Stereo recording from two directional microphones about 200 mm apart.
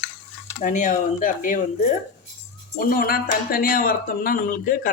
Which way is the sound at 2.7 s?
45° left (ahead or behind).